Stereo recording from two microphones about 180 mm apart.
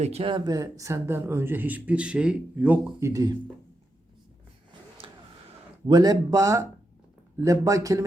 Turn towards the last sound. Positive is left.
turn(degrees=-20)  # may be behind; listen again after turning